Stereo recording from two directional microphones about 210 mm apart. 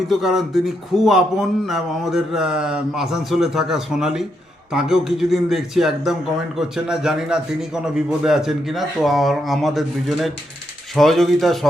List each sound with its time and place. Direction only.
0.1 s speech: centre (ahead or behind)